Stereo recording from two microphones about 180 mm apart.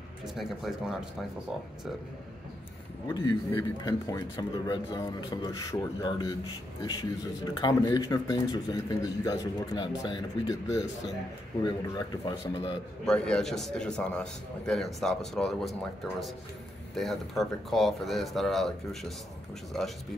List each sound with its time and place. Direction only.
0.3 s a man's voice: centre (ahead or behind)
3.1 s speech: 20° left (ahead or behind)
13.0 s a man's voice: 5° left (ahead or behind)